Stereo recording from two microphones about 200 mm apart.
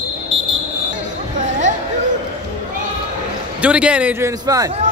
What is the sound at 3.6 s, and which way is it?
A man's voice, 5° right (ahead or behind).